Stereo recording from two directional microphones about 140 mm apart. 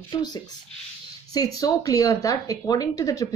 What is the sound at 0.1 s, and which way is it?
Speech, 30° left (ahead or behind).